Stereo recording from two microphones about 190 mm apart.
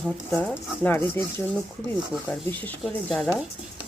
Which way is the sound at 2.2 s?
10° left (ahead or behind).